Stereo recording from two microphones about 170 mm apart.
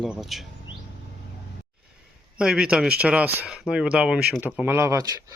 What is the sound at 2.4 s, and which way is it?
Speech, 5° right (ahead or behind).